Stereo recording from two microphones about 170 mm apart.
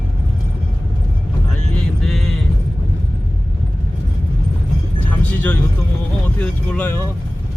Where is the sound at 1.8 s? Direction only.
Centre (ahead or behind).